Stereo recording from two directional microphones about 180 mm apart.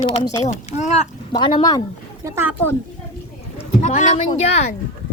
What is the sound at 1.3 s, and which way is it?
Speech, 25° left (ahead or behind).